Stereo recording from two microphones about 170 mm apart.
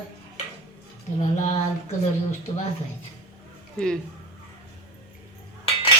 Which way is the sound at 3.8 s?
5° left (ahead or behind).